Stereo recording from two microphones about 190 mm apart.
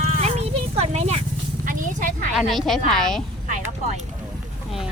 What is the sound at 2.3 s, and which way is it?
Speech, centre (ahead or behind).